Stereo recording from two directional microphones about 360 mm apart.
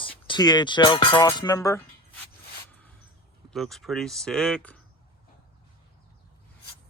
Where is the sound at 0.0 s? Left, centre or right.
Centre.